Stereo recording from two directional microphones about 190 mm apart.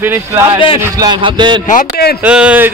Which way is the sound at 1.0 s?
25° right (ahead or behind).